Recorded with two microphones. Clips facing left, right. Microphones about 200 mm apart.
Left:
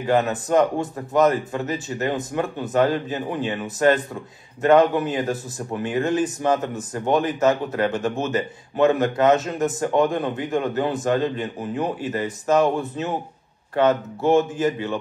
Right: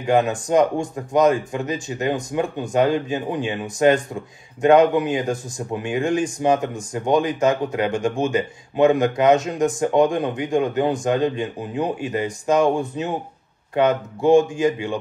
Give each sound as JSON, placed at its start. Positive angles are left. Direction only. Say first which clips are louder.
{"t": 0.0, "sound": "speech", "louder": "right 2 dB", "side_deg": -15}